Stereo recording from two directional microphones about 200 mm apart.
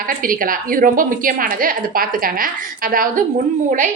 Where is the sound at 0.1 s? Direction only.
45° right (ahead or behind).